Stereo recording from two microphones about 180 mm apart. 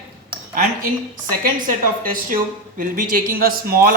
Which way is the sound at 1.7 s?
50° right (ahead or behind).